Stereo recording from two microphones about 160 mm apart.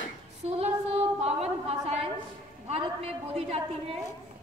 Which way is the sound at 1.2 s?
40° right (ahead or behind).